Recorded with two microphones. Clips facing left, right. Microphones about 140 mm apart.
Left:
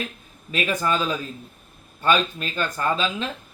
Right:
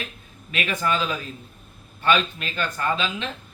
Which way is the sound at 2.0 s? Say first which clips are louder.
Left 1 dB; 40° left (ahead or behind).